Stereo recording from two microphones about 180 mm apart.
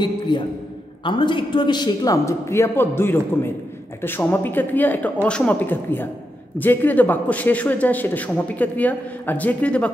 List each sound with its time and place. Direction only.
0.3 s a man's voice: 25° left (ahead or behind); by 9.8 s 5° left (ahead or behind)